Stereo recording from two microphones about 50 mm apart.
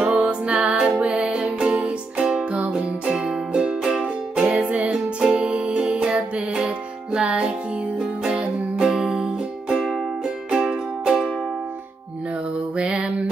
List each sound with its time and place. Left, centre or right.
0.0 s music: right
4.0 s music: right
12.7 s mantra: centre